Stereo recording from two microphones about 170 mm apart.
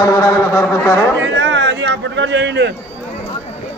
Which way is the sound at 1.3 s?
90° right.